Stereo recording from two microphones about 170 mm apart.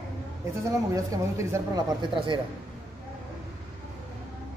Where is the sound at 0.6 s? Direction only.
20° right (ahead or behind).